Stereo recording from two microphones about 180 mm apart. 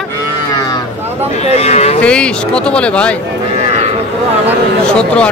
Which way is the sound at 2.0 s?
5° left (ahead or behind).